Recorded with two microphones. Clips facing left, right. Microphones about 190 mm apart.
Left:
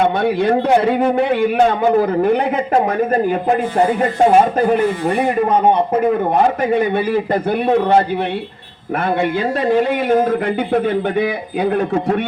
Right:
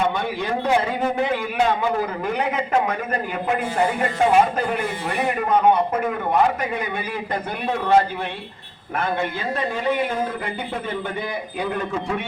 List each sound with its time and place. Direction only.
0.0 s a man's voice: 65° left (ahead or behind)
2.7 s speech: 40° left (ahead or behind)
6.7 s speech: 50° left (ahead or behind)
9.6 s a man's voice: 60° left (ahead or behind)